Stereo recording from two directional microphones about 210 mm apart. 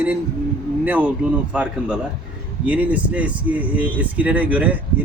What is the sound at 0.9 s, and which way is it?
Speech, 10° right (ahead or behind).